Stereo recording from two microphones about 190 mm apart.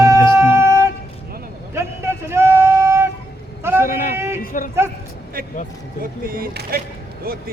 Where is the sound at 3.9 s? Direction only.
40° left (ahead or behind).